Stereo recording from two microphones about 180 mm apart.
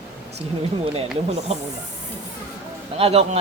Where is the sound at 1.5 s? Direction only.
35° right (ahead or behind).